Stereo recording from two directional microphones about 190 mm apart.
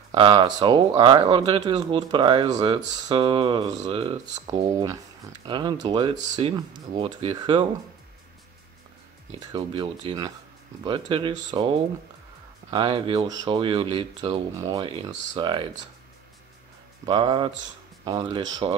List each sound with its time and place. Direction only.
0.1 s speech: 25° right (ahead or behind)
9.5 s speech: 25° right (ahead or behind)
12.7 s speech: 25° right (ahead or behind)
17.0 s speech: 25° right (ahead or behind)